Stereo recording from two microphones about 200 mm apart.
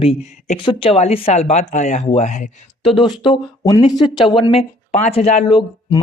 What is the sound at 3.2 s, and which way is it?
Speech, 20° left (ahead or behind).